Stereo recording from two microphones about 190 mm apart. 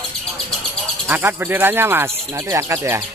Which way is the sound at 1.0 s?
10° right (ahead or behind).